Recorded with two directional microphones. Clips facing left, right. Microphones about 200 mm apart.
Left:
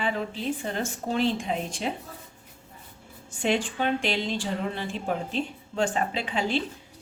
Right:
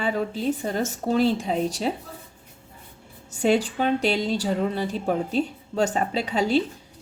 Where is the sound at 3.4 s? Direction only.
40° right (ahead or behind).